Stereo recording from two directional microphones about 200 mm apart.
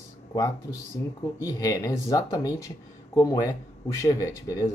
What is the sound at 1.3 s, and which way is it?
Speech, 15° left (ahead or behind).